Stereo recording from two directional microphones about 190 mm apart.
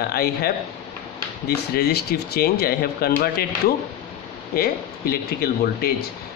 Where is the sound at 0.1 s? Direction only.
55° left (ahead or behind).